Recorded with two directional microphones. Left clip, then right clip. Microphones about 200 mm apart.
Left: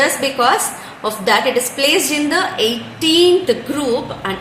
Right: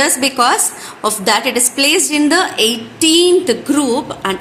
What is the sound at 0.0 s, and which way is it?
A woman's voice, 50° right (ahead or behind).